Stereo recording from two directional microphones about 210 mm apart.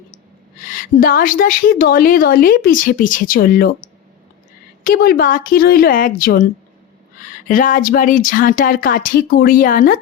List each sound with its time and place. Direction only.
0.6 s a woman's voice: 40° left (ahead or behind)
4.8 s a woman's voice: 40° left (ahead or behind)